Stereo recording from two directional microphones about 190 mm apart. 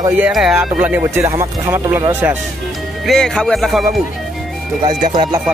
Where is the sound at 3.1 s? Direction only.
5° left (ahead or behind).